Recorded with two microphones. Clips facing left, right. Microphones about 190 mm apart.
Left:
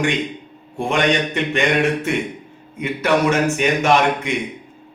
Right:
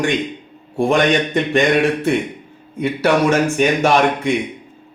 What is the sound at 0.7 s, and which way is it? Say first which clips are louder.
A man's voice: right 4 dB; 35° right (ahead or behind).